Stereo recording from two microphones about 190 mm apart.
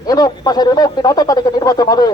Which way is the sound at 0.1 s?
20° left (ahead or behind).